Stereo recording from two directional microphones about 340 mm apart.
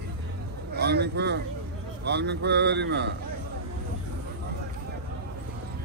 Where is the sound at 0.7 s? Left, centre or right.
Right.